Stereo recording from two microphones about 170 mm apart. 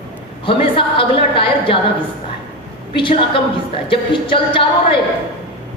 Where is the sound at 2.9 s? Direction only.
30° left (ahead or behind).